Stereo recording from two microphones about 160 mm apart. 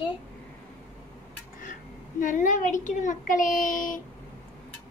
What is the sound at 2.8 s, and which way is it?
A child's voice, 50° left (ahead or behind).